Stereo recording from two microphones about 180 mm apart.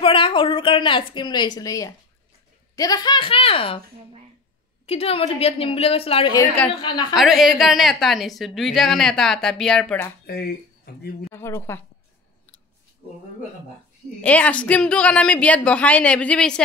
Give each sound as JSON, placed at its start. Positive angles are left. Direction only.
{"t": 0.0, "sound": "a woman's voice", "side_deg": 30}
{"t": 4.8, "sound": "a woman's voice", "side_deg": 35}
{"t": 7.2, "sound": "a woman's voice", "side_deg": 0}
{"t": 10.2, "sound": "speech", "side_deg": 60}
{"t": 11.3, "sound": "speech", "side_deg": 15}
{"t": 14.2, "sound": "speech", "side_deg": 10}